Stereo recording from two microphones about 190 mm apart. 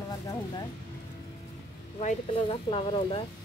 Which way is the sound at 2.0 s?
35° left (ahead or behind).